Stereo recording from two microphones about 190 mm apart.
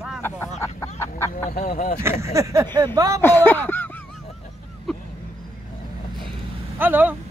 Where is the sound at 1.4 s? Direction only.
45° left (ahead or behind).